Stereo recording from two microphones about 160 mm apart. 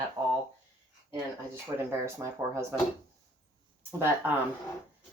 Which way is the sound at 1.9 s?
15° right (ahead or behind).